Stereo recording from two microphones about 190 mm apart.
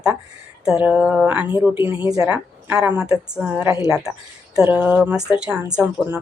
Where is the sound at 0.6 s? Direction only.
5° right (ahead or behind).